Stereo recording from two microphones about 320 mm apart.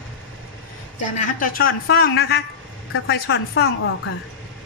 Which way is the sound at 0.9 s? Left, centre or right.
Left.